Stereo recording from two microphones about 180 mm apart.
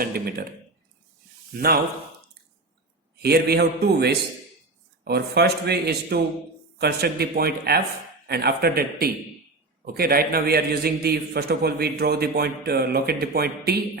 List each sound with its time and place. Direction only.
0.0 s a man's voice: 55° right (ahead or behind)
1.5 s a man's voice: 60° right (ahead or behind)
3.2 s a man's voice: 60° right (ahead or behind)